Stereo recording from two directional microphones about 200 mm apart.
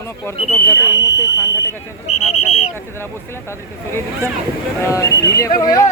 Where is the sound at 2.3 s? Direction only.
30° left (ahead or behind).